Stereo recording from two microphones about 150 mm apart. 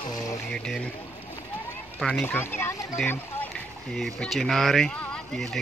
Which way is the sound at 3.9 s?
Centre (ahead or behind).